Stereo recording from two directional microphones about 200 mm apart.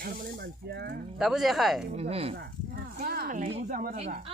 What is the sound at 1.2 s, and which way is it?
Speech, centre (ahead or behind).